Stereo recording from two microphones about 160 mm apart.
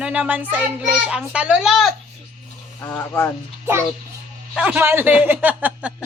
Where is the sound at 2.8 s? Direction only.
15° left (ahead or behind).